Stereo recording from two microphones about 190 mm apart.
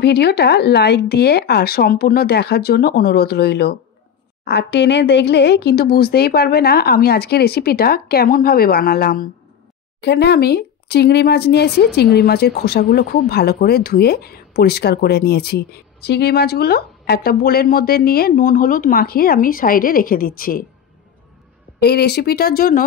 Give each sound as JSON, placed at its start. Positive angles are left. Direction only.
{"t": 0.0, "sound": "speech", "side_deg": 60}
{"t": 9.9, "sound": "speech", "side_deg": 65}
{"t": 21.8, "sound": "speech", "side_deg": 55}